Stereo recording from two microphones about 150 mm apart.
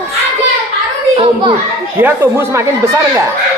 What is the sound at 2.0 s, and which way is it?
Speech, 15° right (ahead or behind).